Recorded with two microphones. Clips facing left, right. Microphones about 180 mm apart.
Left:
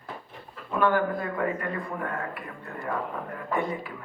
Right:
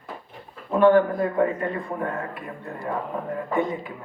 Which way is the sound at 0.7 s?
30° right (ahead or behind).